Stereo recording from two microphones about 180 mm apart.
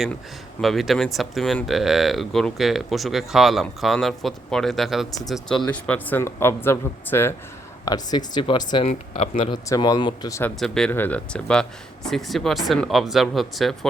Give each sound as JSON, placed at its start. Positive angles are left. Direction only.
{"t": 0.6, "sound": "speech", "side_deg": 0}
{"t": 8.9, "sound": "speech", "side_deg": 35}
{"t": 9.4, "sound": "speech", "side_deg": 20}
{"t": 10.5, "sound": "speech", "side_deg": 0}